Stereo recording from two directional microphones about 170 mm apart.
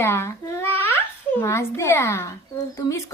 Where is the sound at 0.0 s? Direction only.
15° left (ahead or behind).